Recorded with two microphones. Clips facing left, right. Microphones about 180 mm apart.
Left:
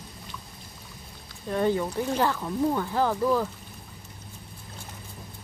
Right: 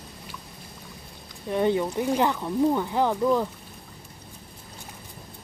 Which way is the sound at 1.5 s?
20° right (ahead or behind).